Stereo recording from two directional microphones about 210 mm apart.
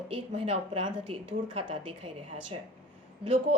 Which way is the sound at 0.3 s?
25° right (ahead or behind).